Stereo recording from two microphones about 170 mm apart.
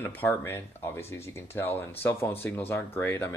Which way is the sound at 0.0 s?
10° left (ahead or behind).